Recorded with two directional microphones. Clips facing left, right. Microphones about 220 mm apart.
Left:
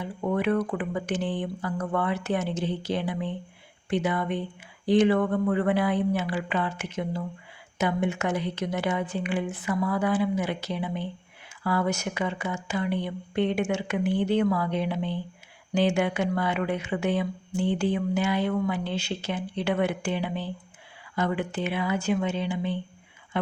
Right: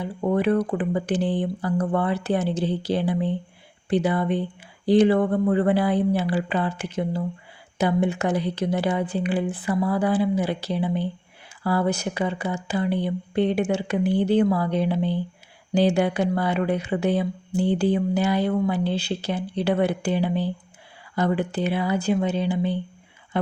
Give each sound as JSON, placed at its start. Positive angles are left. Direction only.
{"t": 0.0, "sound": "speech", "side_deg": -35}